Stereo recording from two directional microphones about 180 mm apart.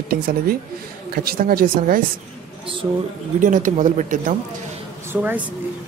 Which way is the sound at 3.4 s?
45° right (ahead or behind).